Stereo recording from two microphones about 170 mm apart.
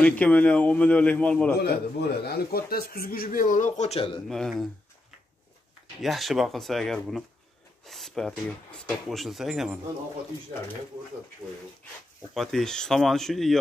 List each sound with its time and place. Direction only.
0.0 s a man's voice: 10° left (ahead or behind)
1.6 s a man's voice: 70° left (ahead or behind); by 4.2 s 35° left (ahead or behind)
4.3 s speech: centre (ahead or behind)
5.9 s speech: centre (ahead or behind)
12.4 s speech: 5° left (ahead or behind)